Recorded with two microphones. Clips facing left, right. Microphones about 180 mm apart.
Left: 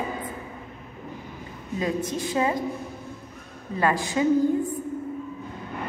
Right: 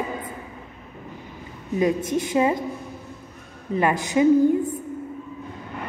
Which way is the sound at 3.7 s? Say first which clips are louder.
Right 3 dB; 20° right (ahead or behind).